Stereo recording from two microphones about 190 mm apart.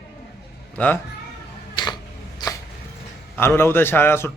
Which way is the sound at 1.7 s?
25° left (ahead or behind).